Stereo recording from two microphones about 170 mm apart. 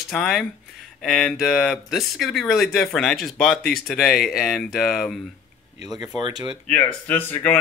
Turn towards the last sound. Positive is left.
turn(degrees=10)  # may be behind; listen again after turning